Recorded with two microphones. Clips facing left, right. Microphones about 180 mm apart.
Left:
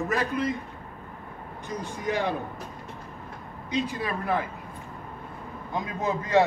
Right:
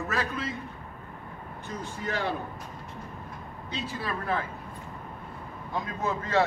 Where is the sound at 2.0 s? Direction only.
15° left (ahead or behind).